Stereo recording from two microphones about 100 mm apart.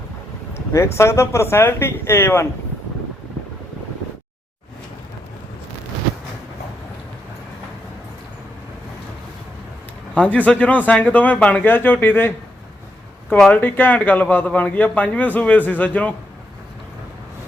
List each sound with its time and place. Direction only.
0.5 s speech: 25° left (ahead or behind)
10.2 s a man's voice: 15° left (ahead or behind)
13.5 s a man's voice: 20° left (ahead or behind)